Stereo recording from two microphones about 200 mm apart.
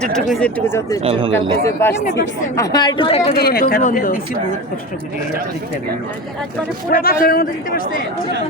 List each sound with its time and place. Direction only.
0.0 s speech: 5° left (ahead or behind)
1.0 s speech: 25° right (ahead or behind)
1.3 s a man's voice: 10° left (ahead or behind); by 3.3 s 30° left (ahead or behind)
3.3 s speech: 50° left (ahead or behind)
6.9 s speech: 45° left (ahead or behind)